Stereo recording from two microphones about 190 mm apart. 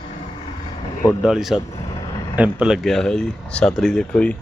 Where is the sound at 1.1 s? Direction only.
5° right (ahead or behind).